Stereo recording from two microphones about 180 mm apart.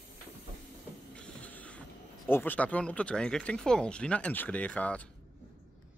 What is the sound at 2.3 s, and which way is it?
Speech, 10° left (ahead or behind).